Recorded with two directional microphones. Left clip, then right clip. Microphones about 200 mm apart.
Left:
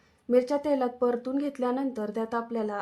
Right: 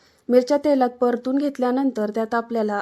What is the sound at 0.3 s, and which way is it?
Speech, 45° right (ahead or behind).